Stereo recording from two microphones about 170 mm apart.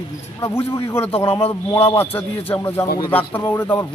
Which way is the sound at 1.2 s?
15° left (ahead or behind).